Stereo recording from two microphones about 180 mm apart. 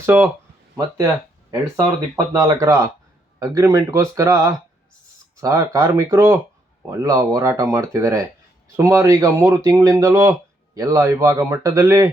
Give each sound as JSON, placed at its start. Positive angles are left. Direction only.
{"t": 0.0, "sound": "speech", "side_deg": -15}
{"t": 1.5, "sound": "speech", "side_deg": -20}